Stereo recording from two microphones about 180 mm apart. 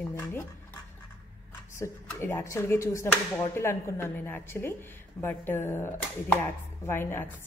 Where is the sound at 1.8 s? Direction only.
10° left (ahead or behind).